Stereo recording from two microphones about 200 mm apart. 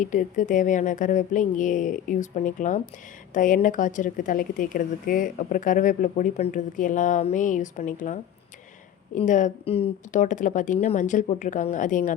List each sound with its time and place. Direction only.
0.0 s a woman's voice: 40° left (ahead or behind)